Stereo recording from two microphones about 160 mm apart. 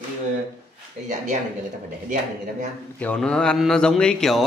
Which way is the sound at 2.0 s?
50° right (ahead or behind).